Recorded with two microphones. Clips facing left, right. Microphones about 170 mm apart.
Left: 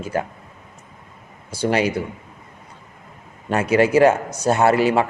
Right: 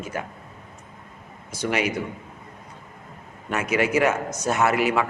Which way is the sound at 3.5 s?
30° left (ahead or behind).